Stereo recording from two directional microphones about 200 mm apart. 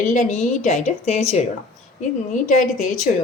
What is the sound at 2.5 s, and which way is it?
Speech, 35° left (ahead or behind).